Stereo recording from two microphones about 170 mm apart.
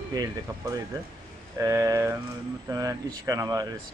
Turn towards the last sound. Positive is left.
turn(degrees=-20)  # may be behind; listen again after turning